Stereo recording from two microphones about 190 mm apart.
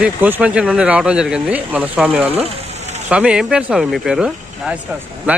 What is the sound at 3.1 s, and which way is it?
Speech, 5° right (ahead or behind).